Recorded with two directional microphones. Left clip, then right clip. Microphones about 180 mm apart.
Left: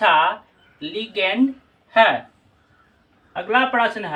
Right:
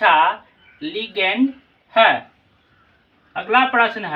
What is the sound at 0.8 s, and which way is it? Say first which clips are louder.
Speech: right 1 dB; 15° left (ahead or behind).